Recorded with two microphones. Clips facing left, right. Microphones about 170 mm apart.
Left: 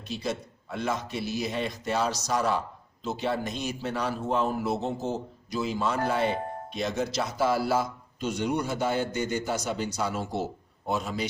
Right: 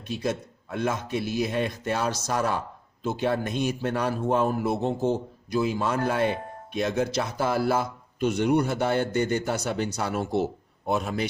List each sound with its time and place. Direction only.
0.1 s a man's voice: 50° right (ahead or behind)